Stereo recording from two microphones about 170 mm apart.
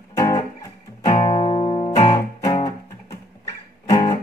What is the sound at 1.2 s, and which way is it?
Music, 35° left (ahead or behind).